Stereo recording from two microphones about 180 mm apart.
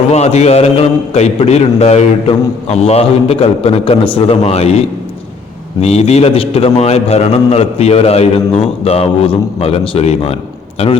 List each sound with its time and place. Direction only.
0.1 s a man's voice: 35° left (ahead or behind)
5.8 s a man's voice: 35° left (ahead or behind)